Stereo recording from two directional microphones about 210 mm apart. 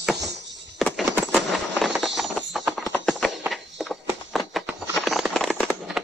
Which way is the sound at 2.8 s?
5° left (ahead or behind).